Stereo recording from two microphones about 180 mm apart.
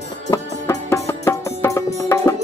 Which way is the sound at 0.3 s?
15° left (ahead or behind).